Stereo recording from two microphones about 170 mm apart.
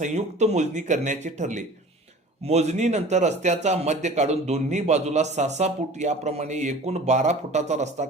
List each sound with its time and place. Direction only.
0.0 s a man's voice: 40° right (ahead or behind)